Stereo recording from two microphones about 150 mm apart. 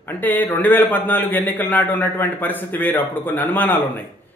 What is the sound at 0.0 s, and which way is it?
Speech, 10° left (ahead or behind).